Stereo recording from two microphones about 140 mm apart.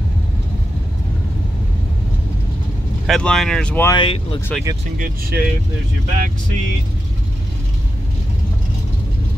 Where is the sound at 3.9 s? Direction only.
40° left (ahead or behind).